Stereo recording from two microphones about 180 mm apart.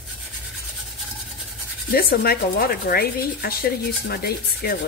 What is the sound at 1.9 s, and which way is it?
Speech, 60° left (ahead or behind).